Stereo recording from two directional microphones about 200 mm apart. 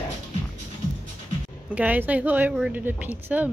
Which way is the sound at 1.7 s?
5° right (ahead or behind).